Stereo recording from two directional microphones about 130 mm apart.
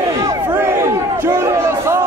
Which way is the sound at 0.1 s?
25° right (ahead or behind).